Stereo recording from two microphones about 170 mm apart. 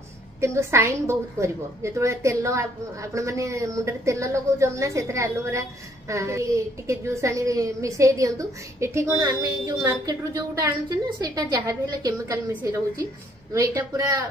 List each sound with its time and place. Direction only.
0.4 s a woman's voice: 15° right (ahead or behind)